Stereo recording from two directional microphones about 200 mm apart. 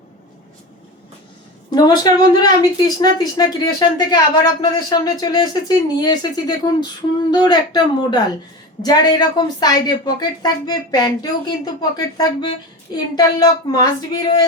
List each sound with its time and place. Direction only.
1.7 s a woman's voice: 20° left (ahead or behind)